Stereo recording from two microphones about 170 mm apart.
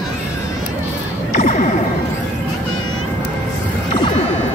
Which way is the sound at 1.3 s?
45° left (ahead or behind).